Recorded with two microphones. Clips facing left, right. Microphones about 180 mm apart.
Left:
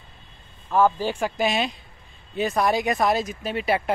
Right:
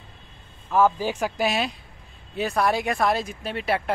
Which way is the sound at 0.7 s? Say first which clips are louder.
Even; 5° right (ahead or behind).